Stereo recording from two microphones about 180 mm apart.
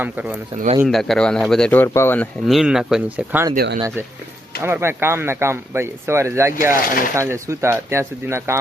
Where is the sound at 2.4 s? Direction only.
Centre (ahead or behind).